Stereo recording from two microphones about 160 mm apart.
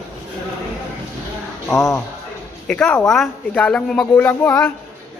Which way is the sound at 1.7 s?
20° left (ahead or behind).